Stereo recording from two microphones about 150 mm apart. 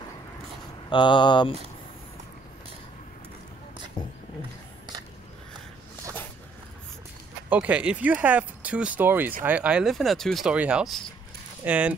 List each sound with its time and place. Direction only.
0.8 s speech: 30° left (ahead or behind)
7.4 s speech: 10° right (ahead or behind)